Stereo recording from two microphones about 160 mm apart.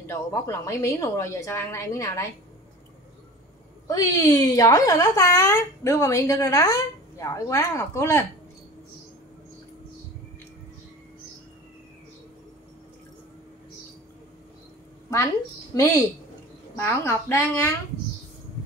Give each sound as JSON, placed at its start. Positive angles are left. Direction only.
{"t": 0.0, "sound": "a woman's voice", "side_deg": 20}
{"t": 3.8, "sound": "a woman's voice", "side_deg": 20}
{"t": 15.7, "sound": "a woman's voice", "side_deg": 20}